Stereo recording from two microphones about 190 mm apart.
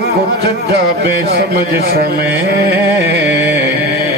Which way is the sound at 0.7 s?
65° right (ahead or behind).